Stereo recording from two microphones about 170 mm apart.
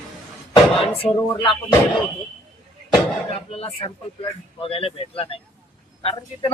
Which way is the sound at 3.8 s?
30° left (ahead or behind).